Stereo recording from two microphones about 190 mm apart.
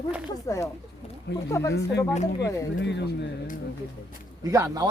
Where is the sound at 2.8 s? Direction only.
65° left (ahead or behind).